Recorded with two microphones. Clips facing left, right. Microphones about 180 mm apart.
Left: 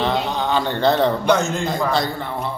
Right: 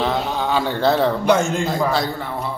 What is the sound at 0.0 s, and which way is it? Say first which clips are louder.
A man's voice: even; 5° right (ahead or behind).